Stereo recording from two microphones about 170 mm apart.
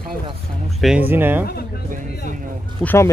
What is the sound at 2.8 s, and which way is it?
Speech, 15° left (ahead or behind).